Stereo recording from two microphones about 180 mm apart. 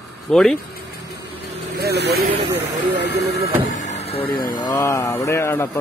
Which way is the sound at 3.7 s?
40° left (ahead or behind).